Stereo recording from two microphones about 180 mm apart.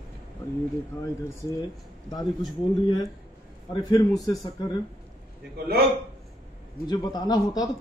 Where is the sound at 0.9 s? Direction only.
15° left (ahead or behind).